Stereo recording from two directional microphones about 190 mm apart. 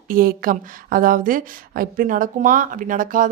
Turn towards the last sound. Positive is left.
turn(degrees=-45)  # may be behind; listen again after turning